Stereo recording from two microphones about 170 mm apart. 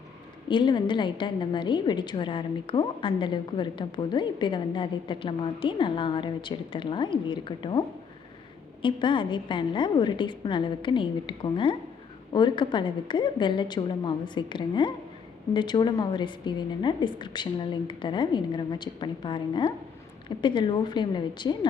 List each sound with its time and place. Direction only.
0.4 s a woman's voice: 25° left (ahead or behind)